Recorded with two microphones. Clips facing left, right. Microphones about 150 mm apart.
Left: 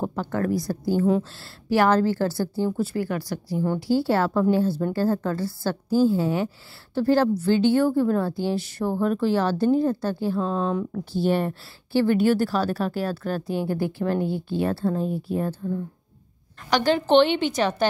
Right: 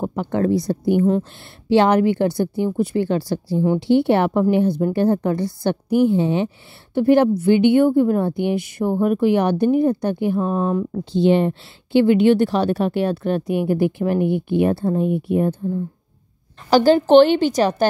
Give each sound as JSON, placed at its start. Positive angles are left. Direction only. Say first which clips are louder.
{"t": 0.0, "sound": "a woman's voice", "louder": "right 5 dB", "side_deg": -15}
{"t": 10.9, "sound": "a woman's voice", "louder": "right 7 dB", "side_deg": -20}
{"t": 15.0, "sound": "speech", "louder": "right 7 dB", "side_deg": -70}
{"t": 15.3, "sound": "speech", "louder": "right 6 dB", "side_deg": -15}
{"t": 16.7, "sound": "a woman's voice", "louder": "right 7 dB", "side_deg": -35}